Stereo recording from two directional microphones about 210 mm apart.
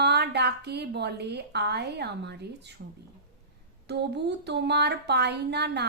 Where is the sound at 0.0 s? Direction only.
55° right (ahead or behind).